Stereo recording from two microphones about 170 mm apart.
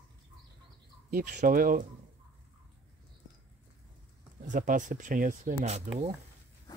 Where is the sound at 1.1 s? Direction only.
55° right (ahead or behind).